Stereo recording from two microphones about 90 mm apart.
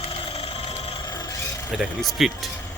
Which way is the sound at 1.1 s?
50° left (ahead or behind).